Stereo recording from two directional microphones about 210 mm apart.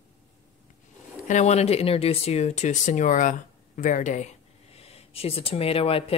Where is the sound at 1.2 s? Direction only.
35° left (ahead or behind).